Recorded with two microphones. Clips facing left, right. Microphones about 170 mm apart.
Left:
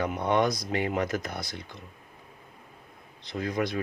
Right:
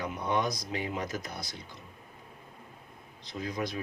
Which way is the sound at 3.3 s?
65° left (ahead or behind).